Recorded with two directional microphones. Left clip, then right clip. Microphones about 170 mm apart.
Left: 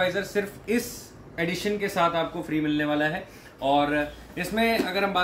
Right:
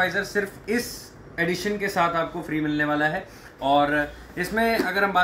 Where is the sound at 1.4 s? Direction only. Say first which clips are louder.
Right 2 dB; 10° left (ahead or behind).